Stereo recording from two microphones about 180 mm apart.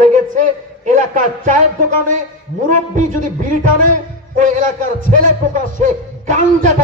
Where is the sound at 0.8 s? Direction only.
45° right (ahead or behind).